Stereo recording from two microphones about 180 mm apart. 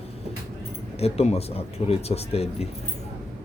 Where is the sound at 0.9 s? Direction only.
35° left (ahead or behind).